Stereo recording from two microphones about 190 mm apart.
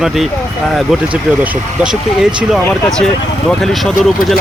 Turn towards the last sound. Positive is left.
turn(degrees=0)  # may be behind; listen again after turning